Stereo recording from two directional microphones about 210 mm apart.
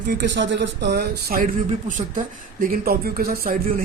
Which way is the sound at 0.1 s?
55° right (ahead or behind).